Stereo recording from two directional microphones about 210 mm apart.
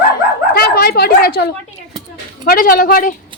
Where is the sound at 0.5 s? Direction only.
45° left (ahead or behind).